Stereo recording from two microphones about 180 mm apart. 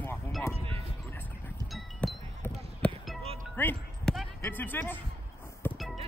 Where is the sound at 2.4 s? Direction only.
5° left (ahead or behind).